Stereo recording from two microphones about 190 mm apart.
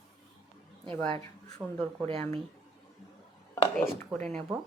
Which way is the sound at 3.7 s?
5° left (ahead or behind).